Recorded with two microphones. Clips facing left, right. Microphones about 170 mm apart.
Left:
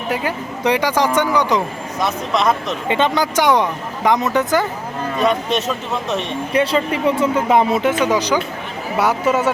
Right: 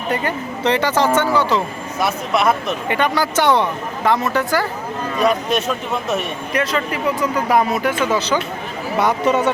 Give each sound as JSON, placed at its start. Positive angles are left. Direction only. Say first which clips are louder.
{"t": 0.1, "sound": "speech", "louder": "right 1 dB", "side_deg": 10}
{"t": 2.0, "sound": "speech", "louder": "even", "side_deg": -5}
{"t": 2.9, "sound": "speech", "louder": "left 2 dB", "side_deg": 20}
{"t": 5.2, "sound": "speech", "louder": "even", "side_deg": 0}
{"t": 6.5, "sound": "speech", "louder": "left 4 dB", "side_deg": 30}